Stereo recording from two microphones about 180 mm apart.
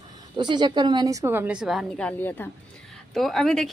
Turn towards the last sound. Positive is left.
turn(degrees=0)  # may be behind; listen again after turning